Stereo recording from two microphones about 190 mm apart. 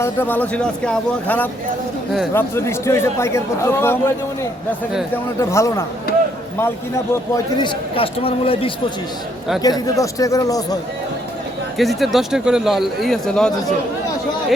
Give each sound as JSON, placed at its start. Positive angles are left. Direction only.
{"t": 0.0, "sound": "a man's voice", "side_deg": 10}
{"t": 5.1, "sound": "a man's voice", "side_deg": 15}
{"t": 11.8, "sound": "a man's voice", "side_deg": 0}